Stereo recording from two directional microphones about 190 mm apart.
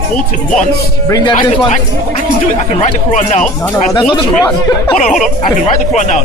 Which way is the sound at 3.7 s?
25° left (ahead or behind).